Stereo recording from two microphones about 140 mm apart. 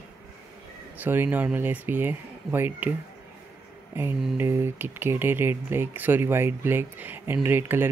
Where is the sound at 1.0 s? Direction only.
15° right (ahead or behind).